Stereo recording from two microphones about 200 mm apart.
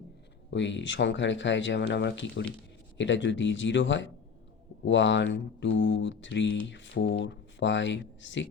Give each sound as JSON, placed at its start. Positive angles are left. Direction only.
{"t": 0.5, "sound": "speech", "side_deg": 65}